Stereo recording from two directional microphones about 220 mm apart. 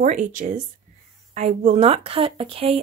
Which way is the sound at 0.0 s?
35° right (ahead or behind).